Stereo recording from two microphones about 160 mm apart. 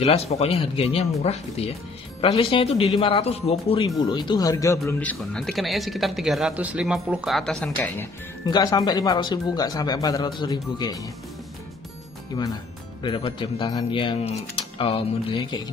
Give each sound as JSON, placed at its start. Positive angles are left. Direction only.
{"t": 0.0, "sound": "speech", "side_deg": 40}
{"t": 3.8, "sound": "speech", "side_deg": 25}
{"t": 5.1, "sound": "speech", "side_deg": 0}
{"t": 8.5, "sound": "speech", "side_deg": 25}
{"t": 13.0, "sound": "speech", "side_deg": 30}